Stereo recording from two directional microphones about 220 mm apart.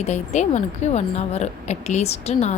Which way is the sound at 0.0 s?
30° left (ahead or behind).